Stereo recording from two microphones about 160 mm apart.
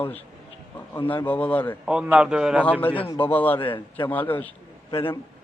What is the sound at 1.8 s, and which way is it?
Speech, 5° right (ahead or behind).